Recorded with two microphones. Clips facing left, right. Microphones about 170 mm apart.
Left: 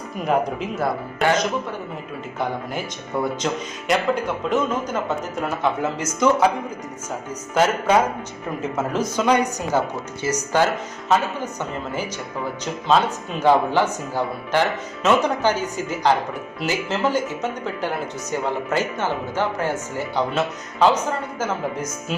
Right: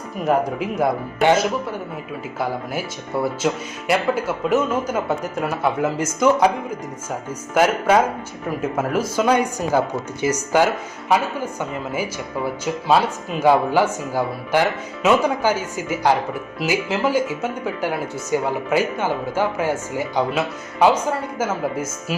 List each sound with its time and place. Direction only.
0.2 s speech: centre (ahead or behind)
0.6 s speech: 20° right (ahead or behind)
2.4 s speech: 5° right (ahead or behind)
7.5 s speech: 10° right (ahead or behind)
12.6 s speech: 10° right (ahead or behind)